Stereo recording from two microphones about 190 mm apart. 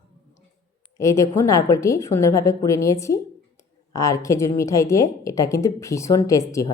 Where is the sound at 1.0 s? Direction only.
15° left (ahead or behind).